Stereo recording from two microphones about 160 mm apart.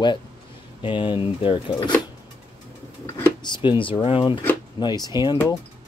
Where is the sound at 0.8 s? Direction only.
30° left (ahead or behind).